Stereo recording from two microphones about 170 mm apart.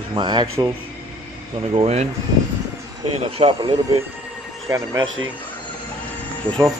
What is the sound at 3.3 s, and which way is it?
Speech, 35° right (ahead or behind).